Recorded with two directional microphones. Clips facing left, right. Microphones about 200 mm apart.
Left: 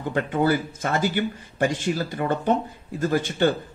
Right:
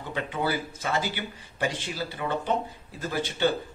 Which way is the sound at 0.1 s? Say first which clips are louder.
Left 7 dB; 50° left (ahead or behind).